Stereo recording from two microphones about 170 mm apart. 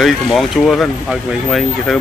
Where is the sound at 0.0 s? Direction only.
Centre (ahead or behind).